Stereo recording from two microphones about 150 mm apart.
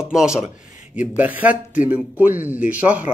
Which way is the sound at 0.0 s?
5° right (ahead or behind).